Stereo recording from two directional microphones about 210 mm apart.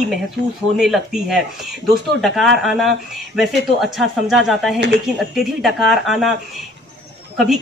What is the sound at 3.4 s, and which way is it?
Speech, centre (ahead or behind).